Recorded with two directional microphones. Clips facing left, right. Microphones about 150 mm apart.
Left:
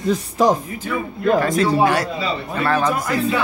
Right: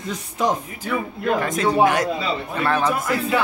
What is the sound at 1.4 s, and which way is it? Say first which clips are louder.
Speech: left 1 dB; 20° right (ahead or behind).